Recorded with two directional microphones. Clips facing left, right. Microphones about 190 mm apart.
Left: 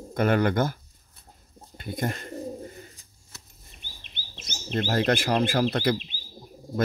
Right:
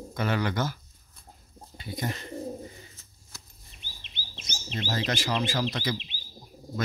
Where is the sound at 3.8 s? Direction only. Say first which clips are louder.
Right 1 dB; 55° left (ahead or behind).